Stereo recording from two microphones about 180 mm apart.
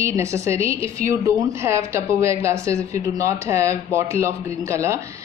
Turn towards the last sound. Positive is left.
turn(degrees=-15)  # may be behind; listen again after turning